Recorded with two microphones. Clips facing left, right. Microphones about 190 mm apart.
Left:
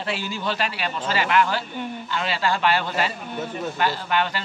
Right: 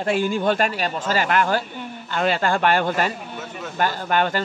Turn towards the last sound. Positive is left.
turn(degrees=-45)  # may be behind; listen again after turning